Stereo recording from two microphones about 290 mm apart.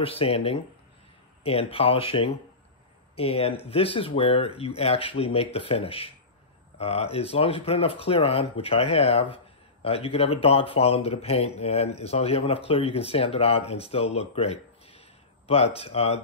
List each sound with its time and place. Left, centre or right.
0.0 s speech: centre